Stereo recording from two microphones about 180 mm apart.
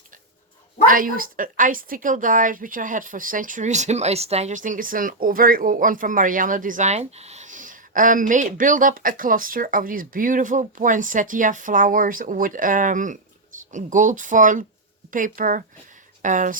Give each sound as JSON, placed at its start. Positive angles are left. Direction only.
{"t": 0.9, "sound": "a woman's voice", "side_deg": -50}